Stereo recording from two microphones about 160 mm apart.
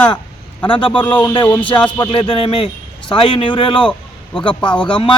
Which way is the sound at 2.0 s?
35° left (ahead or behind).